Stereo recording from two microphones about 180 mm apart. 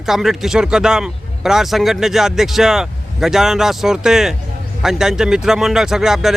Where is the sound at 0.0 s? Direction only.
Centre (ahead or behind).